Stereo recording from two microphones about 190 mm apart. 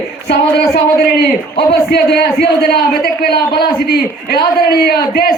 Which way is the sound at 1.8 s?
55° left (ahead or behind).